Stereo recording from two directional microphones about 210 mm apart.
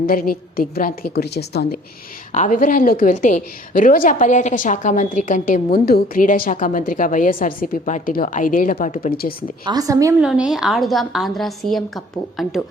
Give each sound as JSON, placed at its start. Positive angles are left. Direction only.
{"t": 0.0, "sound": "a woman's voice", "side_deg": 45}
{"t": 2.3, "sound": "a woman's voice", "side_deg": 35}
{"t": 9.6, "sound": "a woman's voice", "side_deg": -15}
{"t": 10.2, "sound": "a woman's voice", "side_deg": -5}